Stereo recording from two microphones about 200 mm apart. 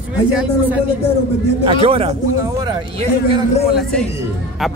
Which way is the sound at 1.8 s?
30° right (ahead or behind).